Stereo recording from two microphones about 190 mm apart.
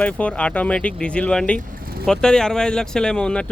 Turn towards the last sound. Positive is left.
turn(degrees=5)  # may be behind; listen again after turning